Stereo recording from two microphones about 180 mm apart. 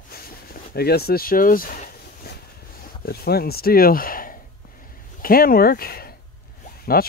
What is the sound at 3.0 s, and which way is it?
Speech, 60° left (ahead or behind).